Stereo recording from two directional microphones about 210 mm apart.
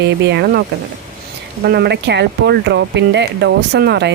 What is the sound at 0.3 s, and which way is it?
Speech, 50° right (ahead or behind).